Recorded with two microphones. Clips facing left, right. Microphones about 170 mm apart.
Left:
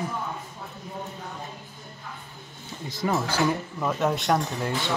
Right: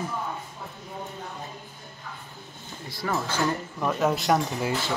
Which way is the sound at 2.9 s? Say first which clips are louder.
Left 3 dB; 20° left (ahead or behind).